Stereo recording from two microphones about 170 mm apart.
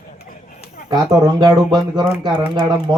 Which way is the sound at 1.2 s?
25° right (ahead or behind).